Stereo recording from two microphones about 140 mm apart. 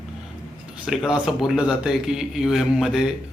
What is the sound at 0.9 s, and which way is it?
A man's voice, 5° right (ahead or behind).